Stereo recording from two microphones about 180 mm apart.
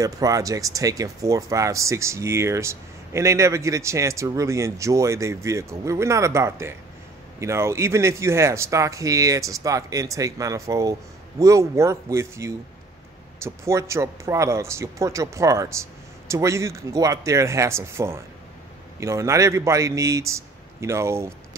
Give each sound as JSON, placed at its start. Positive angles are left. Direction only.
{"t": 0.0, "sound": "speech", "side_deg": -20}